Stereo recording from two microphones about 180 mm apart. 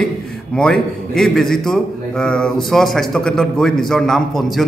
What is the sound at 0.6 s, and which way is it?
A man's voice, 5° left (ahead or behind).